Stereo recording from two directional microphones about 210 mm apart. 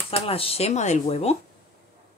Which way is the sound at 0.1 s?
25° left (ahead or behind).